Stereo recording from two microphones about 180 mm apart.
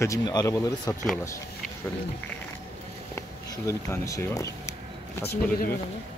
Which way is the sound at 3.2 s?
15° left (ahead or behind).